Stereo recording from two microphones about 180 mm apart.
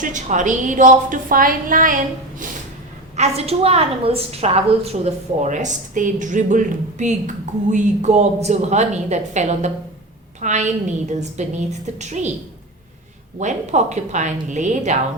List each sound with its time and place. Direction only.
0.0 s a woman's voice: 45° right (ahead or behind)
3.2 s a woman's voice: 35° right (ahead or behind)
13.4 s a woman's voice: 40° right (ahead or behind)